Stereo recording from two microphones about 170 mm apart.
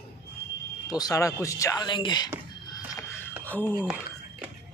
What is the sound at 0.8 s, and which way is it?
Speech, 20° left (ahead or behind).